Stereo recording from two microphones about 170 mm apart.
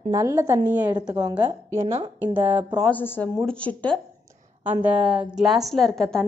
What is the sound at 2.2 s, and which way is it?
Speech, 10° right (ahead or behind).